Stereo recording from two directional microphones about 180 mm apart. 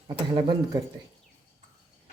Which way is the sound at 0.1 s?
25° right (ahead or behind).